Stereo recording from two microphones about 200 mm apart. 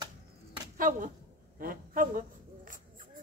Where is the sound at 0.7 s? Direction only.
45° right (ahead or behind).